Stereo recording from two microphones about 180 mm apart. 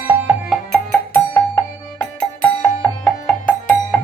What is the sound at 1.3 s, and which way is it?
Music, 15° left (ahead or behind).